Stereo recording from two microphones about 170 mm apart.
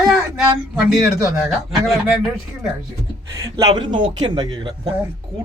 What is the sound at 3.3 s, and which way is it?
Speech, 25° right (ahead or behind).